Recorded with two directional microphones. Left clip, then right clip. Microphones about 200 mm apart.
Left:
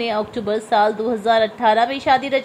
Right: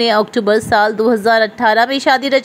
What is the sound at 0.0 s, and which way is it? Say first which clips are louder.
A woman's voice: right 9 dB; 25° right (ahead or behind).